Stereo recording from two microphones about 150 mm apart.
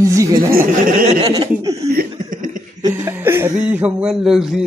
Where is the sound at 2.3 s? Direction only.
60° right (ahead or behind).